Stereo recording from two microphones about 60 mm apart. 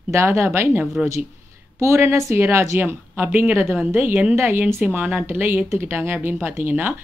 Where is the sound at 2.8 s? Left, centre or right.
Right.